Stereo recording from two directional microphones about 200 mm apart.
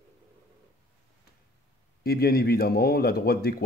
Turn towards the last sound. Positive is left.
turn(degrees=50)  # may be behind; listen again after turning